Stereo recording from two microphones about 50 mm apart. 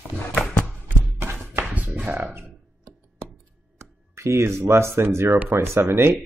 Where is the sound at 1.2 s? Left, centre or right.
Right.